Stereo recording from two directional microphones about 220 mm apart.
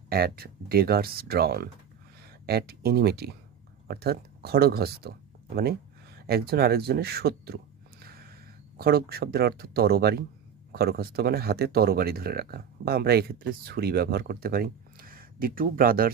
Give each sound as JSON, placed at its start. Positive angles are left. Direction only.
{"t": 0.1, "sound": "speech", "side_deg": -45}
{"t": 6.1, "sound": "speech", "side_deg": -45}